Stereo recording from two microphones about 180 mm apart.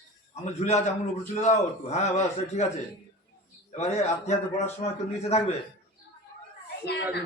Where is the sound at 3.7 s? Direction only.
40° left (ahead or behind).